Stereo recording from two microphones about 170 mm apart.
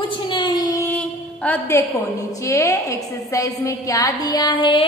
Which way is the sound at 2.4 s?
15° left (ahead or behind).